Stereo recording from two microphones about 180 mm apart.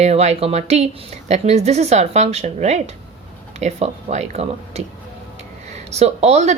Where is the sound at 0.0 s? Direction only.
40° right (ahead or behind).